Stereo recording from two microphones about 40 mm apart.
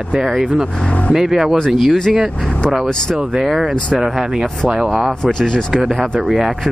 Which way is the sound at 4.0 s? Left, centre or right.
Centre.